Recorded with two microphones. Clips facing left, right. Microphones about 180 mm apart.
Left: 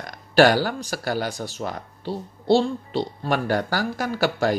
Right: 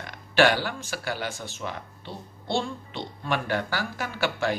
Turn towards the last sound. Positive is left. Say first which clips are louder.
# left 5 dB
turn(degrees=40)  # may be behind; listen again after turning